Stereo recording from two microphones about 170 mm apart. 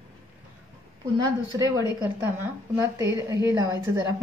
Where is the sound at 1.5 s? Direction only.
20° right (ahead or behind).